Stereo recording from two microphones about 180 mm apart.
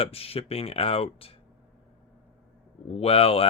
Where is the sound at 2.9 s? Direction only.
35° left (ahead or behind).